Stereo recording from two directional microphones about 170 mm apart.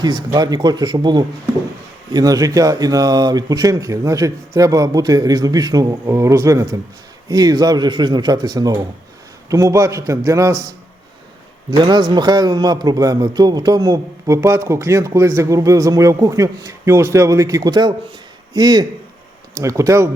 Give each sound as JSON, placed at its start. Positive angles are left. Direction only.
{"t": 0.0, "sound": "a man's voice", "side_deg": -25}
{"t": 11.8, "sound": "a man's voice", "side_deg": -25}